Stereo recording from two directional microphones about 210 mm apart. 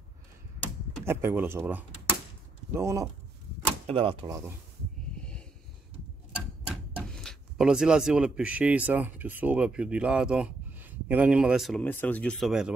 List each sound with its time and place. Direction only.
1.0 s speech: 10° right (ahead or behind)
3.8 s speech: 25° right (ahead or behind)
7.0 s speech: 5° left (ahead or behind)